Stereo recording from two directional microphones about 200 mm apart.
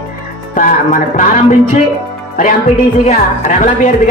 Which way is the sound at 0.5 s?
40° left (ahead or behind).